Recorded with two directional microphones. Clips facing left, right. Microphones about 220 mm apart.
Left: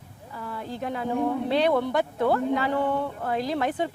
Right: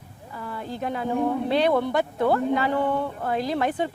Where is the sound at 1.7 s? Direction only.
20° right (ahead or behind).